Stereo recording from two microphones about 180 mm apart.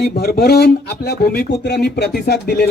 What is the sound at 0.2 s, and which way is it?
Speech, 60° left (ahead or behind).